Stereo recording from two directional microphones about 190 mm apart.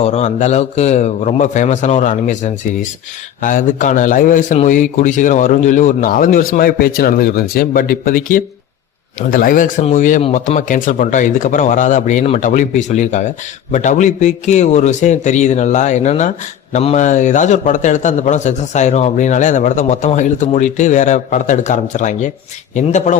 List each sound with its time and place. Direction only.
0.0 s a man's voice: 35° left (ahead or behind)